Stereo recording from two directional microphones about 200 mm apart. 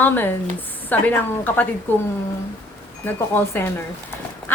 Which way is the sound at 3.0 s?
10° left (ahead or behind).